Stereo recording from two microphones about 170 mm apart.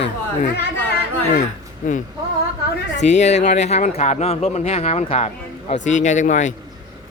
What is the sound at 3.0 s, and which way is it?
Speech, 45° left (ahead or behind).